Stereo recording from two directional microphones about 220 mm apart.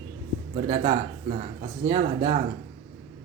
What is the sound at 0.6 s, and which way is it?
Mantra, 35° right (ahead or behind).